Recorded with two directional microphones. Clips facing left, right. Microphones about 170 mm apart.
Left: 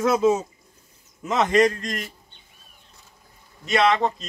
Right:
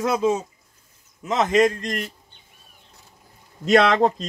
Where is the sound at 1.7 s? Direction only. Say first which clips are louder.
Right 1 dB; 20° right (ahead or behind).